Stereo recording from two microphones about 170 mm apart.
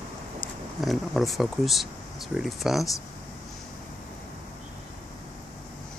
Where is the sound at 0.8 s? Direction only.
Centre (ahead or behind).